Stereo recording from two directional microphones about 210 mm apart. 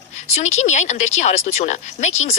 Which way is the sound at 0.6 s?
35° left (ahead or behind).